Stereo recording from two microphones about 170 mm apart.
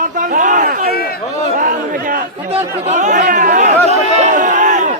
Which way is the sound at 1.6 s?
50° right (ahead or behind).